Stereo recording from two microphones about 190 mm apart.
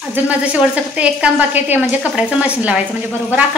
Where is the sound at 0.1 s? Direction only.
5° right (ahead or behind).